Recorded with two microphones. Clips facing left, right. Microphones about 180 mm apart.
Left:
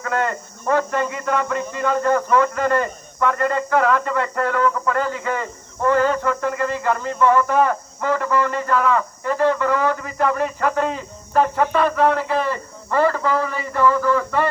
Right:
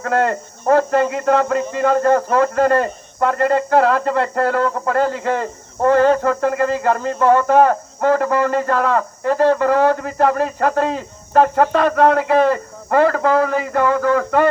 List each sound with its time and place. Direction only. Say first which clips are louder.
0.0 s speech: right 5 dB; 40° right (ahead or behind)
11.4 s speech: right 3 dB; 50° right (ahead or behind)